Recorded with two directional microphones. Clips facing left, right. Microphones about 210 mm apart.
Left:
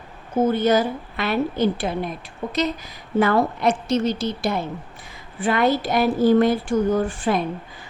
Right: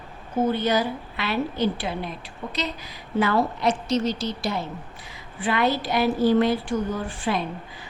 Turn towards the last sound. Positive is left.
turn(degrees=50)  # may be behind; listen again after turning